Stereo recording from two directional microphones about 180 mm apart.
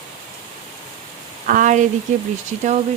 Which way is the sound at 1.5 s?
45° right (ahead or behind).